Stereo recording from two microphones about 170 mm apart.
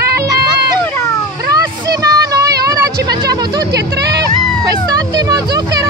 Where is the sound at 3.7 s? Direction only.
75° right (ahead or behind).